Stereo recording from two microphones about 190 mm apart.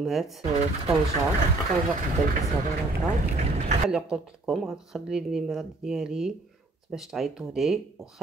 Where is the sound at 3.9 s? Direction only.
5° right (ahead or behind).